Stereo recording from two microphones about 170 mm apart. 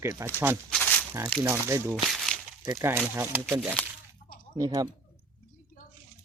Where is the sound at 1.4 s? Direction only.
15° right (ahead or behind).